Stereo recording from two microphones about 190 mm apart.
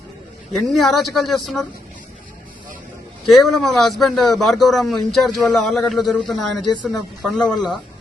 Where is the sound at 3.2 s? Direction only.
Centre (ahead or behind).